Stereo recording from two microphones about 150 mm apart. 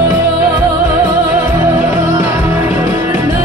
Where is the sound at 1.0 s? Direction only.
15° right (ahead or behind).